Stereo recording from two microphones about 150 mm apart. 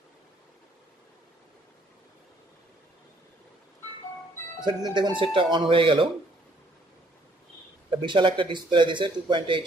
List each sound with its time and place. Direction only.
4.8 s speech: 30° right (ahead or behind)
8.0 s speech: 35° right (ahead or behind)